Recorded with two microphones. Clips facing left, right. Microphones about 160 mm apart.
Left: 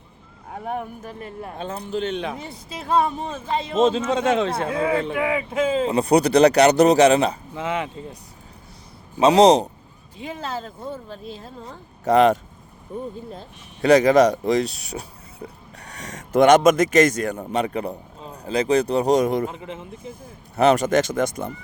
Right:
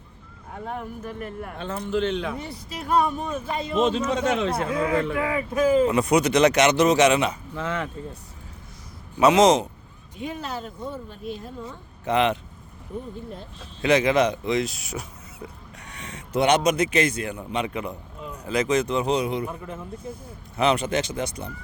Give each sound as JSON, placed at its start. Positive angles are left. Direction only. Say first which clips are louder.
{"t": 1.2, "sound": "speech", "louder": "left 5 dB", "side_deg": 25}
{"t": 7.5, "sound": "speech", "louder": "left 3 dB", "side_deg": 15}
{"t": 9.1, "sound": "speech", "louder": "left 3 dB", "side_deg": 35}
{"t": 11.7, "sound": "speech", "louder": "left 7 dB", "side_deg": 40}
{"t": 13.8, "sound": "a man's voice", "louder": "left 5 dB", "side_deg": 40}
{"t": 19.5, "sound": "speech", "louder": "even", "side_deg": 90}
{"t": 20.6, "sound": "speech", "louder": "left 5 dB", "side_deg": 45}